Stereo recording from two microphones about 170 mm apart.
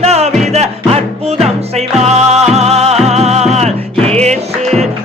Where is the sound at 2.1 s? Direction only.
40° right (ahead or behind).